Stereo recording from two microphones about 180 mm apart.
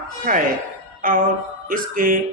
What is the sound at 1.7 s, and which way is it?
Speech, 50° right (ahead or behind).